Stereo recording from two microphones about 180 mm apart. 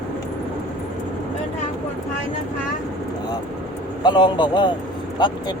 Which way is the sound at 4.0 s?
25° left (ahead or behind).